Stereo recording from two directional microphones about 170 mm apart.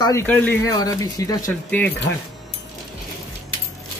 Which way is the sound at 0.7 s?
20° left (ahead or behind).